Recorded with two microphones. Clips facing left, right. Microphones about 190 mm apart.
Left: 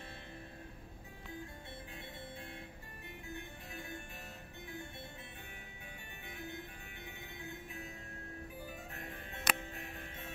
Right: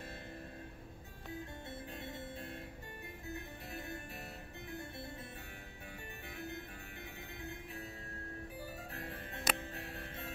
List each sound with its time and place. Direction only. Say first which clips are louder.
3.7 s music: right 2 dB; 35° right (ahead or behind)
8.9 s music: right 2 dB; 40° right (ahead or behind)